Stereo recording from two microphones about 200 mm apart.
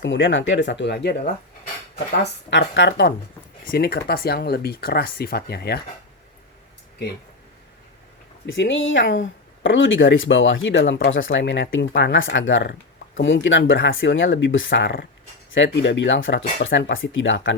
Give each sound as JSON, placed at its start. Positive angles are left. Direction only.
{"t": 0.0, "sound": "speech", "side_deg": 70}
{"t": 2.5, "sound": "speech", "side_deg": 65}
{"t": 3.7, "sound": "speech", "side_deg": 50}
{"t": 8.4, "sound": "speech", "side_deg": 70}